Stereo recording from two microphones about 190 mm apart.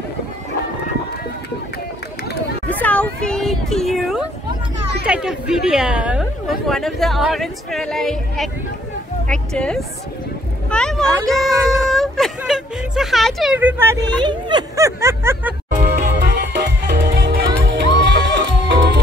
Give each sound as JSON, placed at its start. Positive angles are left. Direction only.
{"t": 2.7, "sound": "a sound", "side_deg": 10}
{"t": 5.0, "sound": "speech", "side_deg": -5}
{"t": 15.8, "sound": "music", "side_deg": -60}